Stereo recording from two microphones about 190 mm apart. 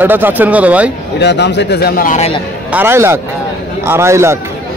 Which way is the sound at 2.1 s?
35° left (ahead or behind).